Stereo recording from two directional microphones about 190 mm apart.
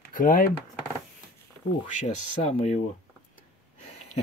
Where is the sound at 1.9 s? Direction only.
35° left (ahead or behind).